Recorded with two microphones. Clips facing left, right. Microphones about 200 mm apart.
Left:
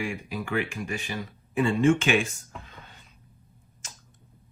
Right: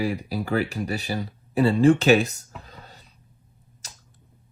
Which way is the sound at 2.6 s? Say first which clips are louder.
Right 3 dB; 35° right (ahead or behind).